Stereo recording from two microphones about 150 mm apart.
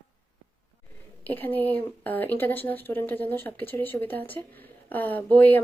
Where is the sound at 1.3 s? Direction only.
10° left (ahead or behind).